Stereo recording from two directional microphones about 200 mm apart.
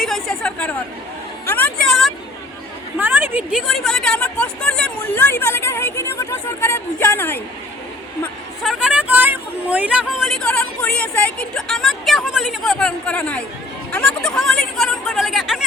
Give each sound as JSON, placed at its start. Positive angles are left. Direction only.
{"t": 0.0, "sound": "chatter", "side_deg": 0}
{"t": 1.5, "sound": "a sound", "side_deg": 10}
{"t": 3.0, "sound": "speech", "side_deg": -10}
{"t": 8.2, "sound": "speech", "side_deg": 0}